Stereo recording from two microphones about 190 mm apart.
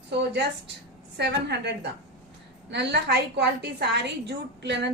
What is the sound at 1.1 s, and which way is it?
A woman's voice, 65° right (ahead or behind).